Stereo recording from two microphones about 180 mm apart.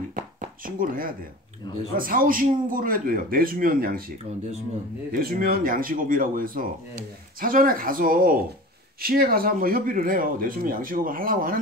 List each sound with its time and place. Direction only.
0.7 s speech: 50° right (ahead or behind)
5.1 s speech: 55° right (ahead or behind)